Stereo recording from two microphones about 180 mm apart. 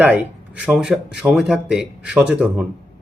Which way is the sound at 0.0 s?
10° right (ahead or behind).